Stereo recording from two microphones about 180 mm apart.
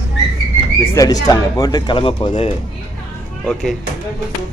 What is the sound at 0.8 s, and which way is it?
Speech, 15° left (ahead or behind).